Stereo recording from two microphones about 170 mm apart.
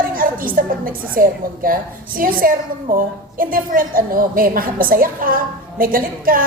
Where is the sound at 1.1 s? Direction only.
55° right (ahead or behind).